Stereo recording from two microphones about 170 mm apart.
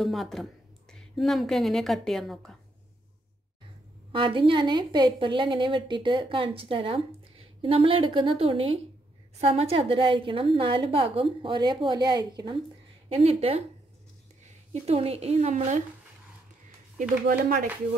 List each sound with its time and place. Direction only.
0.0 s speech: centre (ahead or behind)
4.1 s a woman's voice: 30° right (ahead or behind)
13.1 s speech: 35° right (ahead or behind)
14.7 s speech: 35° right (ahead or behind)
17.3 s speech: 60° right (ahead or behind)